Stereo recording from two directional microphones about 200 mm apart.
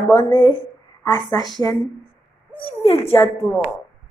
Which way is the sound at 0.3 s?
25° left (ahead or behind).